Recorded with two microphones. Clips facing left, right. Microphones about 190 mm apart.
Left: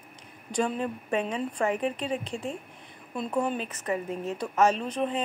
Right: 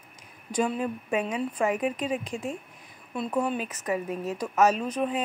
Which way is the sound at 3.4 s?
5° right (ahead or behind).